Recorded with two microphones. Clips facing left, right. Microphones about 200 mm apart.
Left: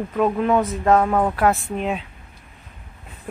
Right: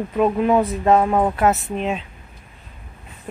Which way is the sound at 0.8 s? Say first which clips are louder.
Even; 15° right (ahead or behind).